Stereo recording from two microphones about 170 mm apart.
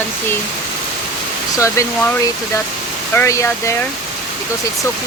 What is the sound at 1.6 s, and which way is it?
Speech, 15° left (ahead or behind).